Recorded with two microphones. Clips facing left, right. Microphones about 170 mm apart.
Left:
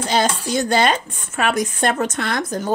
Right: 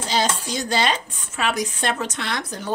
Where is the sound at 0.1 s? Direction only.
55° left (ahead or behind).